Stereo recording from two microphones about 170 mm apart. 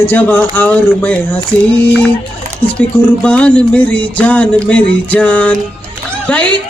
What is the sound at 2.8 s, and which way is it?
Speech, 5° left (ahead or behind).